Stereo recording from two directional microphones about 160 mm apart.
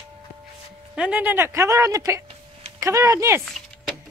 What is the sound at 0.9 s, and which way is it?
Speech, 5° right (ahead or behind).